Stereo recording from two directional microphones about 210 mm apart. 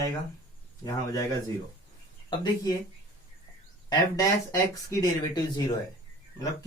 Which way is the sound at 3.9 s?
15° left (ahead or behind).